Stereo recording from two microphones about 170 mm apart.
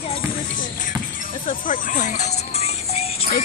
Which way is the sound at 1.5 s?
50° left (ahead or behind).